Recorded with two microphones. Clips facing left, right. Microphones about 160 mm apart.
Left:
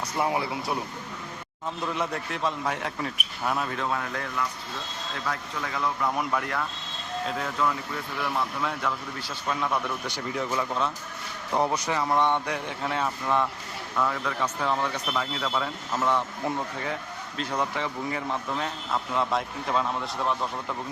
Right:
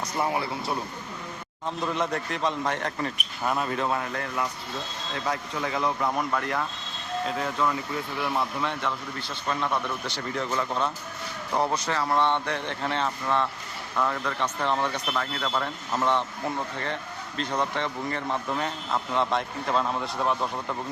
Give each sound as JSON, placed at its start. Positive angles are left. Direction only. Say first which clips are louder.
{"t": 0.2, "sound": "speech", "louder": "left 1 dB", "side_deg": 10}
{"t": 1.9, "sound": "a man's voice", "louder": "right 2 dB", "side_deg": 0}
{"t": 5.2, "sound": "a man's voice", "louder": "right 3 dB", "side_deg": -20}
{"t": 6.1, "sound": "a man's voice", "louder": "right 1 dB", "side_deg": 5}